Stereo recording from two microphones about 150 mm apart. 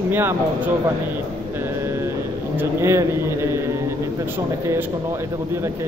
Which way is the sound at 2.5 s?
15° right (ahead or behind).